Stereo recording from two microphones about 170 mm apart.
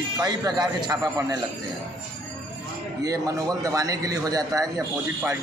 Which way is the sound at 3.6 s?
20° right (ahead or behind).